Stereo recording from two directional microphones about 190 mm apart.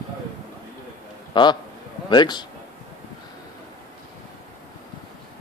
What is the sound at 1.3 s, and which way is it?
A man's voice, 25° left (ahead or behind).